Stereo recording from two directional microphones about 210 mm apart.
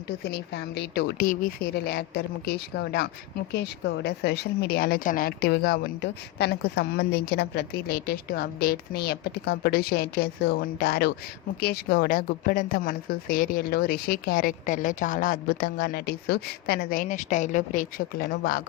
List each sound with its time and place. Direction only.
0.3 s a woman's voice: 50° left (ahead or behind)